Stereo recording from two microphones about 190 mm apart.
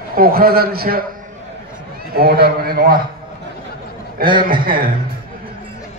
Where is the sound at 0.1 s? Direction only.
50° right (ahead or behind).